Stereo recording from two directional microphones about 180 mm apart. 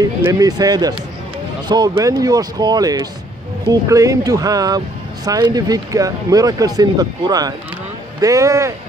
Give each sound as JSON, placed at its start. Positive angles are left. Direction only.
{"t": 0.0, "sound": "speech", "side_deg": -20}